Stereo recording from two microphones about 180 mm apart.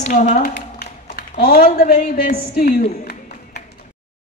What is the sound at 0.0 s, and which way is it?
A woman's voice, 45° left (ahead or behind).